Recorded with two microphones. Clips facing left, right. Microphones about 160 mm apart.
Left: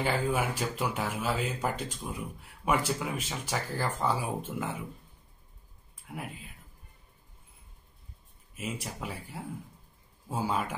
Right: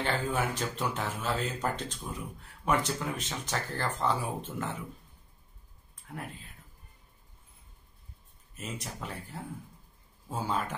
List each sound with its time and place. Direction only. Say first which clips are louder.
0.0 s speech: left 2 dB; 10° left (ahead or behind)
6.0 s speech: left 1 dB; 5° left (ahead or behind)
8.5 s speech: left 3 dB; 5° left (ahead or behind)